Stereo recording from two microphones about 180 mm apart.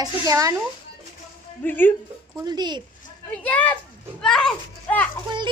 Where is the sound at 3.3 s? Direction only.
10° left (ahead or behind).